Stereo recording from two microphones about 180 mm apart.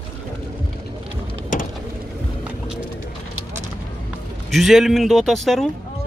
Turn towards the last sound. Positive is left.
turn(degrees=0)  # may be behind; listen again after turning